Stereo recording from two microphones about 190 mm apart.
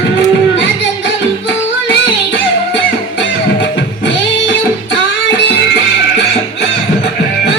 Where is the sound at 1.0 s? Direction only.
70° left (ahead or behind).